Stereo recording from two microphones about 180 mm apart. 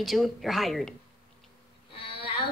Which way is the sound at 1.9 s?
30° left (ahead or behind).